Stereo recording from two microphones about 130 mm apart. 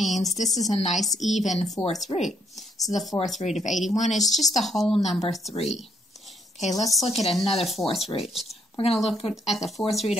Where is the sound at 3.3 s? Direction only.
65° left (ahead or behind).